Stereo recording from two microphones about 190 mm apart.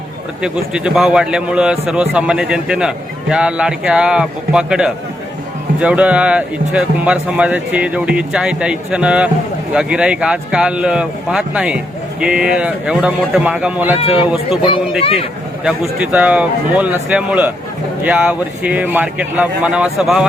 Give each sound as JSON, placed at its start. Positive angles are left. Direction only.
{"t": 0.4, "sound": "speech", "side_deg": -5}
{"t": 14.0, "sound": "speech", "side_deg": 30}
{"t": 15.6, "sound": "speech", "side_deg": -5}